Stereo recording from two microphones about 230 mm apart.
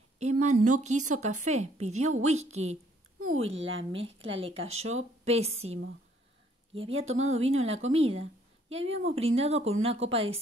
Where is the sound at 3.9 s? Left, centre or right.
Right.